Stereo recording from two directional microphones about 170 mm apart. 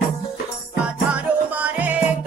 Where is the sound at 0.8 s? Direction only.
10° right (ahead or behind).